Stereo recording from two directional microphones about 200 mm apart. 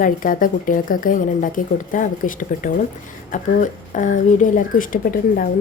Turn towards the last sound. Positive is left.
turn(degrees=45)  # may be behind; listen again after turning